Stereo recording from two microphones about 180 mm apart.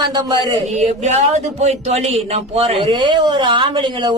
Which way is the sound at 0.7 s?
40° right (ahead or behind).